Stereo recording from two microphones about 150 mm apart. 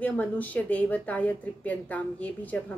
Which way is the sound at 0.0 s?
10° left (ahead or behind).